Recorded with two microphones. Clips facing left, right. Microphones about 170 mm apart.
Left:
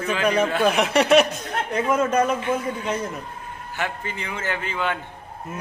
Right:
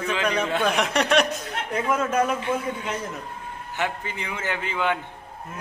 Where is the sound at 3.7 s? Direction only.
15° right (ahead or behind).